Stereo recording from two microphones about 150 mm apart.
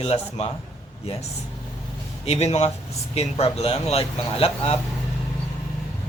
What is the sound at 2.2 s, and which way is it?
Speech, 45° left (ahead or behind).